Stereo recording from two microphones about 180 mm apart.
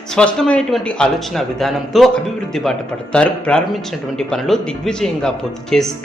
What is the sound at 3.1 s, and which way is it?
Speech, 5° left (ahead or behind).